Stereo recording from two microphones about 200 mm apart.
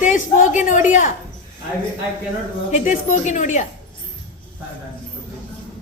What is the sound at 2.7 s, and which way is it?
Speech, 35° left (ahead or behind).